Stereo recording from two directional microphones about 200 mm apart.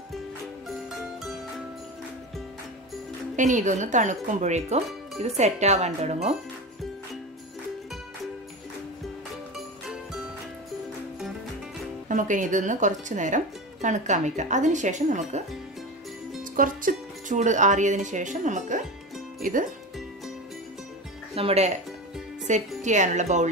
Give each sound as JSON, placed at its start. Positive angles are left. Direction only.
{"t": 3.3, "sound": "speech", "side_deg": -40}
{"t": 12.1, "sound": "speech", "side_deg": -40}
{"t": 16.5, "sound": "speech", "side_deg": -45}
{"t": 21.4, "sound": "speech", "side_deg": -30}